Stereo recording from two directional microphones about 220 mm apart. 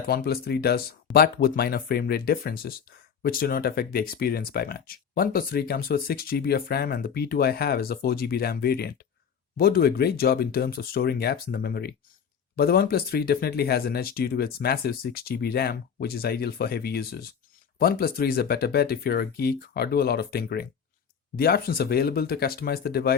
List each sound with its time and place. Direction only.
0.1 s speech: 45° left (ahead or behind)